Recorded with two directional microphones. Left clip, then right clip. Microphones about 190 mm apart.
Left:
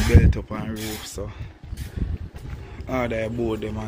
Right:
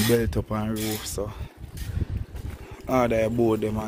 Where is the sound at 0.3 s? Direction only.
20° right (ahead or behind).